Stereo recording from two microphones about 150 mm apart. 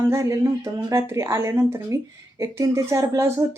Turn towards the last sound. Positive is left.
turn(degrees=-20)  # may be behind; listen again after turning